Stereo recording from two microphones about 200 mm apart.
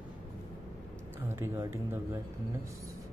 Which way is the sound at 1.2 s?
10° right (ahead or behind).